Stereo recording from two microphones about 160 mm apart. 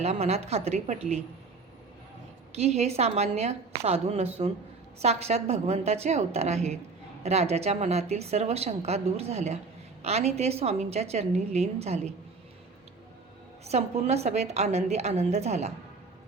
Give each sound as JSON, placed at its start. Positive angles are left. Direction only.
{"t": 0.0, "sound": "a woman's voice", "side_deg": -40}
{"t": 2.5, "sound": "a woman's voice", "side_deg": -40}
{"t": 13.7, "sound": "a woman's voice", "side_deg": -40}